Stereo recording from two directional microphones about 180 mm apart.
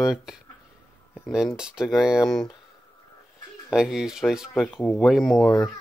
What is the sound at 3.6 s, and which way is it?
Speech, 5° right (ahead or behind).